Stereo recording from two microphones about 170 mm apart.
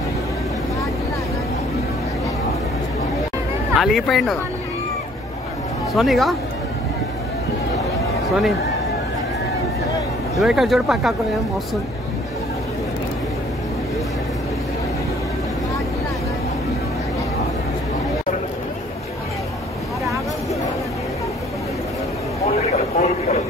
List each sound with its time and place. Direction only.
3.7 s speech: centre (ahead or behind)
5.9 s speech: centre (ahead or behind)
10.4 s speech: centre (ahead or behind)
22.4 s vehicle: 40° left (ahead or behind)